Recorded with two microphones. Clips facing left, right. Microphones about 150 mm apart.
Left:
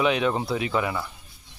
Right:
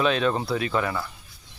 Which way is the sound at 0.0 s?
15° left (ahead or behind).